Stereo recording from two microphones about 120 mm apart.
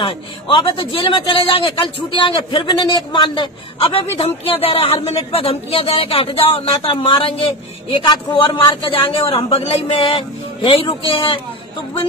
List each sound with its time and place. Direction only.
0.0 s a man's voice: 50° left (ahead or behind)